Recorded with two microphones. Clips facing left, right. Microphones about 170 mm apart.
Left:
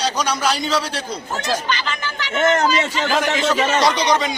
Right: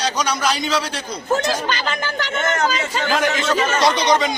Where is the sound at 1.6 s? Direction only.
45° right (ahead or behind).